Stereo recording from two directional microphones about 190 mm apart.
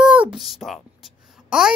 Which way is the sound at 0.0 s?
5° right (ahead or behind).